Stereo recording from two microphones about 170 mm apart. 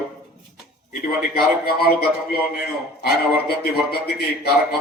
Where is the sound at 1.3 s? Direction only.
65° left (ahead or behind).